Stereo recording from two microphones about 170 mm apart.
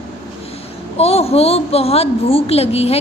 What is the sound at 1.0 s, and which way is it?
A woman's voice, 35° left (ahead or behind).